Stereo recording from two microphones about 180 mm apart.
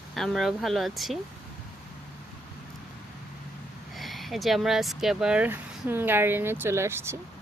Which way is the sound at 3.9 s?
Centre (ahead or behind).